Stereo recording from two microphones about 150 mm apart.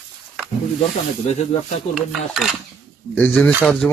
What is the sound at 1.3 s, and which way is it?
Speech, 50° left (ahead or behind).